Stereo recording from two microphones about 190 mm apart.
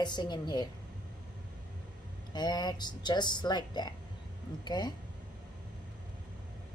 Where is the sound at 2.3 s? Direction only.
20° left (ahead or behind).